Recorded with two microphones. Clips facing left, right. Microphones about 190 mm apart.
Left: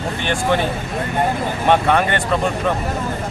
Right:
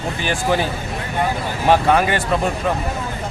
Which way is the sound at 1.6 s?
5° right (ahead or behind).